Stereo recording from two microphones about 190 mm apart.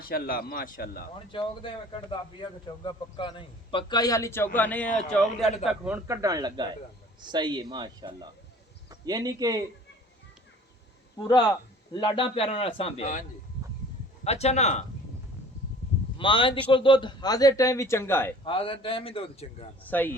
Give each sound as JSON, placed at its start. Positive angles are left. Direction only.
{"t": 0.0, "sound": "speech", "side_deg": 50}
{"t": 1.3, "sound": "a man's voice", "side_deg": 25}
{"t": 6.1, "sound": "a man's voice", "side_deg": -20}
{"t": 11.2, "sound": "a man's voice", "side_deg": 20}
{"t": 14.3, "sound": "speech", "side_deg": 35}
{"t": 16.1, "sound": "a man's voice", "side_deg": 25}
{"t": 18.4, "sound": "a man's voice", "side_deg": 30}
{"t": 19.9, "sound": "a man's voice", "side_deg": 10}